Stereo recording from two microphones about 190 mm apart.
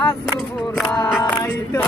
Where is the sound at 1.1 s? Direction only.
10° left (ahead or behind).